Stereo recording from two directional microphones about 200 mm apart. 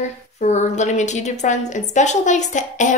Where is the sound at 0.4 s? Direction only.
35° left (ahead or behind).